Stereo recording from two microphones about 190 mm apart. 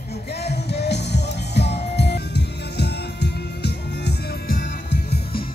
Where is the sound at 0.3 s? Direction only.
60° left (ahead or behind).